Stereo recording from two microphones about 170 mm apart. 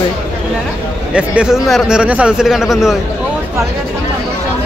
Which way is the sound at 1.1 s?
5° right (ahead or behind).